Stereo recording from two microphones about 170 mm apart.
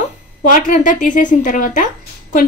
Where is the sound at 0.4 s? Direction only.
50° left (ahead or behind).